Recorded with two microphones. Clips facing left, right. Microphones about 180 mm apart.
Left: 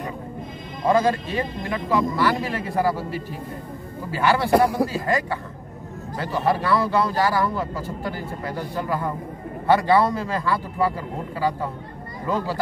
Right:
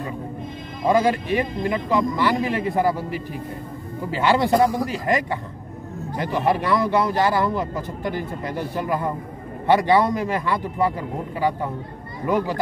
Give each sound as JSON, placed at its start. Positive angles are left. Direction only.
{"t": 0.8, "sound": "speech", "side_deg": -15}
{"t": 4.5, "sound": "a man's voice", "side_deg": 60}
{"t": 4.8, "sound": "speech", "side_deg": -20}